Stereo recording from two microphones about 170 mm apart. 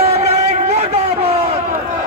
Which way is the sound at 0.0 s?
40° right (ahead or behind).